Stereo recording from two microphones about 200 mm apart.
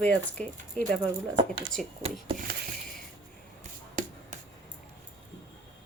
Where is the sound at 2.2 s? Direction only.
40° right (ahead or behind).